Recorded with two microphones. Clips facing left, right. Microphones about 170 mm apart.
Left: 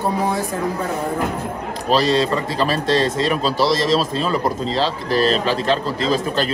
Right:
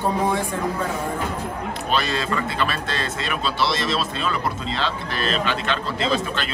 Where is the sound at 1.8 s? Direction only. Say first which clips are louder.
Left 8 dB; 35° left (ahead or behind).